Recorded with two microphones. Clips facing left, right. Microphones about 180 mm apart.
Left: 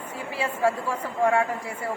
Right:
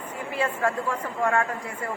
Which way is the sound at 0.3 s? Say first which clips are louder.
Left 1 dB; 10° left (ahead or behind).